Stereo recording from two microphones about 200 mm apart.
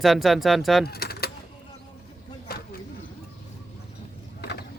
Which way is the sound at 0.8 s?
50° left (ahead or behind).